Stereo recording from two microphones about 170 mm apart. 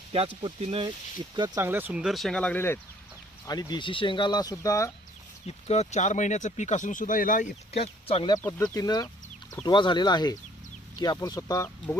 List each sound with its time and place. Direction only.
0.4 s speech: 30° right (ahead or behind)
1.4 s speech: 15° right (ahead or behind); by 2.8 s 10° left (ahead or behind)
3.4 s speech: 25° left (ahead or behind)
5.5 s speech: 40° left (ahead or behind)
8.4 s speech: 10° left (ahead or behind)